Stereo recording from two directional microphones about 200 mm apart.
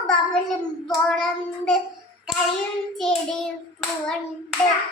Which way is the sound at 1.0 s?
5° left (ahead or behind).